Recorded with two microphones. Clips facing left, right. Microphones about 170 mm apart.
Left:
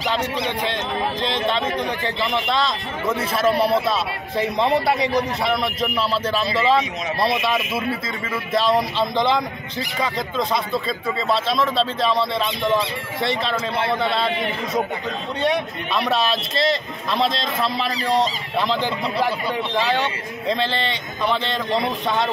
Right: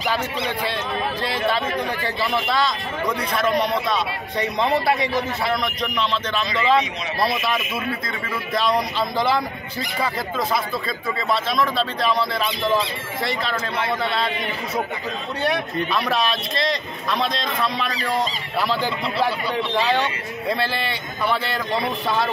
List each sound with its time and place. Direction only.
2.4 s a man's voice: centre (ahead or behind)
6.3 s a man's voice: 30° left (ahead or behind)
6.7 s a man's voice: centre (ahead or behind)
8.5 s a man's voice: centre (ahead or behind)
12.0 s a man's voice: centre (ahead or behind)
13.4 s a man's voice: 30° left (ahead or behind)
14.1 s a man's voice: centre (ahead or behind)
17.2 s a man's voice: 30° left (ahead or behind)
18.1 s a man's voice: centre (ahead or behind)
20.5 s a man's voice: 10° right (ahead or behind)